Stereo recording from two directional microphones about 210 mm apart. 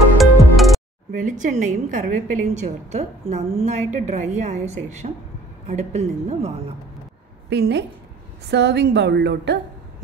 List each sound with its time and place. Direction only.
0.2 s music: centre (ahead or behind)
1.4 s a woman's voice: 35° right (ahead or behind)
7.4 s a woman's voice: 50° right (ahead or behind)